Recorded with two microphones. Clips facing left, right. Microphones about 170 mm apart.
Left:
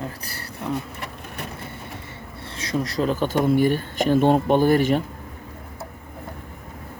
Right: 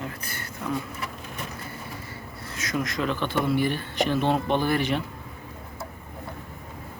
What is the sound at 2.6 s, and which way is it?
Speech, 30° left (ahead or behind).